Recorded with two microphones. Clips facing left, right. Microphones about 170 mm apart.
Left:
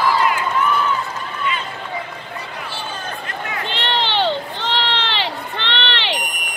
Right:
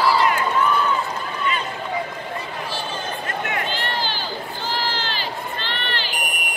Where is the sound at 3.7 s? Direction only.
70° left (ahead or behind).